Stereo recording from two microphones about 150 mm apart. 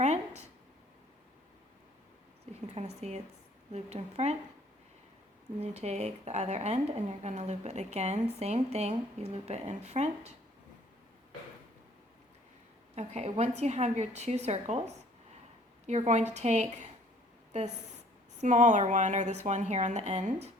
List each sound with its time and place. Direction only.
0.0 s speech: 50° right (ahead or behind)
2.7 s a woman's voice: 45° right (ahead or behind)
5.5 s a woman's voice: 45° right (ahead or behind)
13.0 s a woman's voice: 45° right (ahead or behind)
18.3 s a woman's voice: 55° right (ahead or behind)